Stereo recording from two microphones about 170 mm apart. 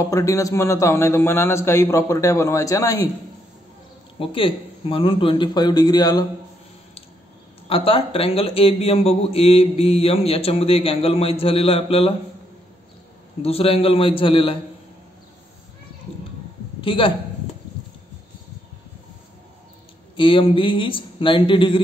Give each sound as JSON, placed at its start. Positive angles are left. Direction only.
{"t": 0.1, "sound": "a man's voice", "side_deg": 20}
{"t": 4.2, "sound": "a man's voice", "side_deg": 30}
{"t": 7.6, "sound": "a man's voice", "side_deg": 35}
{"t": 13.4, "sound": "a man's voice", "side_deg": 35}
{"t": 16.8, "sound": "speech", "side_deg": 30}
{"t": 20.2, "sound": "a man's voice", "side_deg": 30}